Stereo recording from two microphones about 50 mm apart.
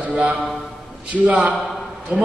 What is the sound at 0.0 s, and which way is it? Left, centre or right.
A man's voice, right.